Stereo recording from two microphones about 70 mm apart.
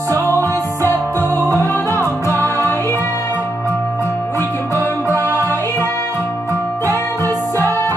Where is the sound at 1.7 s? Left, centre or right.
Left.